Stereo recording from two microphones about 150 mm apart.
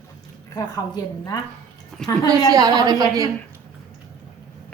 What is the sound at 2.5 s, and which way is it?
Speech, 25° right (ahead or behind).